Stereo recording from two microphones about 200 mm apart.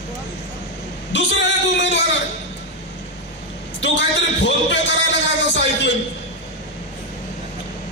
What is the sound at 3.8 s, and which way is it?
A man's voice, 60° left (ahead or behind).